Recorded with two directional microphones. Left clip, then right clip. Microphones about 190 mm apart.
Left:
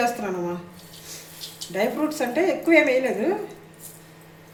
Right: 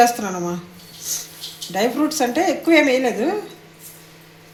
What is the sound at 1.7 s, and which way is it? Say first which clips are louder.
A woman's voice: right 4 dB; 55° right (ahead or behind).